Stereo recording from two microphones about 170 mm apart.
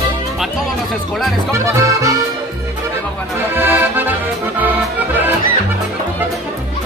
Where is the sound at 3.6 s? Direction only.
10° right (ahead or behind).